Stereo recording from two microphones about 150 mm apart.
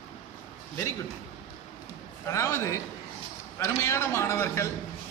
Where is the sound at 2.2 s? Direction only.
20° left (ahead or behind).